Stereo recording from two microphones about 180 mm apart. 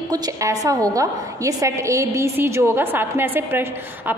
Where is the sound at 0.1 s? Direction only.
20° right (ahead or behind).